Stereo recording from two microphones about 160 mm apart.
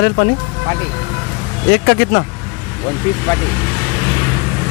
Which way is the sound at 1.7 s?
90° left.